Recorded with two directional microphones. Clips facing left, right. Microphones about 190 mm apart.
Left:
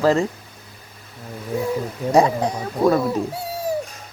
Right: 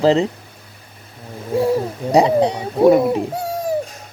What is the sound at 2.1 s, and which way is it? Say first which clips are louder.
Speech: right 3 dB; 15° right (ahead or behind).